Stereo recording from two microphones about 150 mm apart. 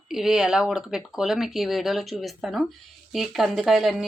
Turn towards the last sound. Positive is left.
turn(degrees=0)  # may be behind; listen again after turning